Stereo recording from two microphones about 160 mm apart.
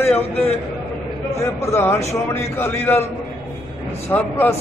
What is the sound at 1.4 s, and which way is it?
A man's voice, 15° left (ahead or behind).